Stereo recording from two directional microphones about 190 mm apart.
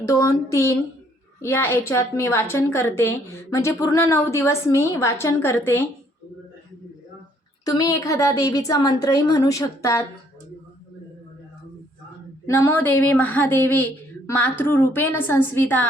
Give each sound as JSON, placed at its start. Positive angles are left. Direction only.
{"t": 0.0, "sound": "a woman's voice", "side_deg": 15}
{"t": 7.6, "sound": "a woman's voice", "side_deg": 20}
{"t": 12.5, "sound": "a woman's voice", "side_deg": 15}